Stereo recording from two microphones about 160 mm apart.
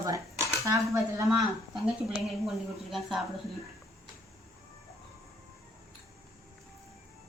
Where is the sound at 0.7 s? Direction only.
20° right (ahead or behind).